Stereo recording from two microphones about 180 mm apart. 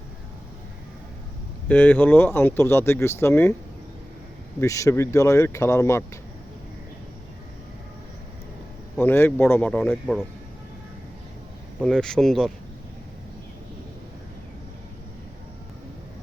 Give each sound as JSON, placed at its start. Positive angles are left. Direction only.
{"t": 1.6, "sound": "speech", "side_deg": 10}
{"t": 4.6, "sound": "speech", "side_deg": 15}
{"t": 9.0, "sound": "speech", "side_deg": 10}
{"t": 11.8, "sound": "speech", "side_deg": 5}